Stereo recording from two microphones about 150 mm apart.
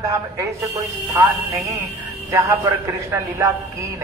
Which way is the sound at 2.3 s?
20° right (ahead or behind).